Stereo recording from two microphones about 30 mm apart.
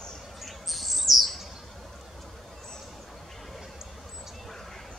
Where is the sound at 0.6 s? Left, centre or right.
Centre.